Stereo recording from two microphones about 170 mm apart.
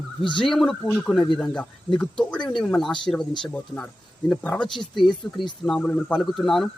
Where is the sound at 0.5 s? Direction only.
Centre (ahead or behind).